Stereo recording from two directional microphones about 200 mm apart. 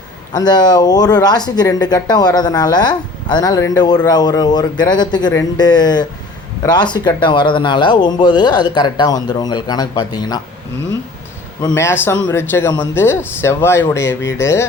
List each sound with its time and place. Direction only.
0.3 s speech: 20° left (ahead or behind)
11.6 s a man's voice: 15° left (ahead or behind)